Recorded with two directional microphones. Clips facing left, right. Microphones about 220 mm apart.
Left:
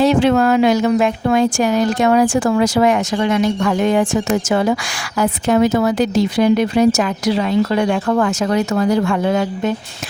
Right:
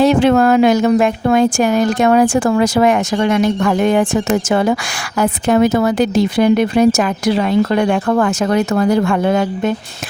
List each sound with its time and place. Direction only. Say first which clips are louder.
0.0 s a woman's voice: right 2 dB; 50° right (ahead or behind)